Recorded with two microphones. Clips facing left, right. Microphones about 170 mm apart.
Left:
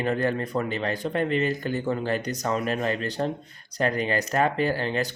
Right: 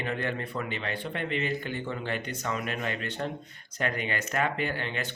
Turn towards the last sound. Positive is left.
turn(degrees=35)  # may be behind; listen again after turning